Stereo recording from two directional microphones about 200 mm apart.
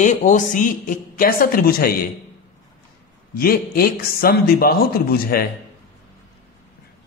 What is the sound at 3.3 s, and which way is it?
A man's voice, 50° left (ahead or behind).